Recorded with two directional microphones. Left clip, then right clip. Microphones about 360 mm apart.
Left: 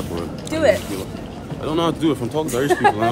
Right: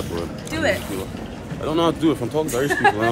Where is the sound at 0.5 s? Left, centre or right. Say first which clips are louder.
Left 5 dB; left.